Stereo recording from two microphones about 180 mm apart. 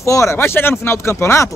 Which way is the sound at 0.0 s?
15° left (ahead or behind).